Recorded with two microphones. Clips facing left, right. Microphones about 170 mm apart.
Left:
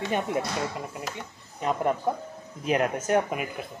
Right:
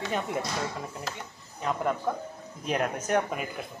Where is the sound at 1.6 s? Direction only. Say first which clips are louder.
Left 3 dB; 20° left (ahead or behind).